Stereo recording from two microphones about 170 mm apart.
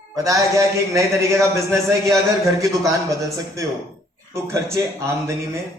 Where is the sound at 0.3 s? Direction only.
20° right (ahead or behind).